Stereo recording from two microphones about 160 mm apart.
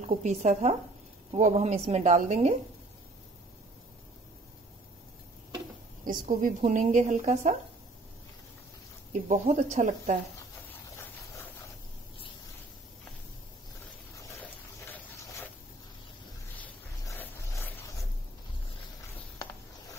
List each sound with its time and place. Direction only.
0.0 s a woman's voice: 45° right (ahead or behind)
6.0 s a woman's voice: 55° right (ahead or behind)
9.1 s a woman's voice: 50° right (ahead or behind)
16.5 s a sound: 10° left (ahead or behind)